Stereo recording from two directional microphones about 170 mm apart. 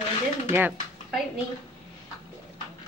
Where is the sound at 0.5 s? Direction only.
10° right (ahead or behind).